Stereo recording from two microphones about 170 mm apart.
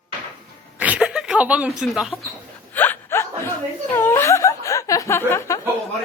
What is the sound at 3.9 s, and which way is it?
Speech, 15° left (ahead or behind).